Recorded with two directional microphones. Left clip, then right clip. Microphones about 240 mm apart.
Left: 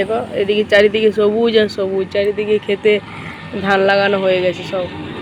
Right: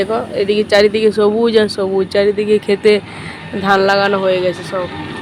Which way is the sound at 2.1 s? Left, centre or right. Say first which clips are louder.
Right 3 dB; right.